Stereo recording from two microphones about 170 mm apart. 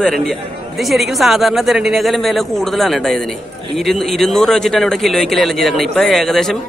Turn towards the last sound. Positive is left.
turn(degrees=0)  # may be behind; listen again after turning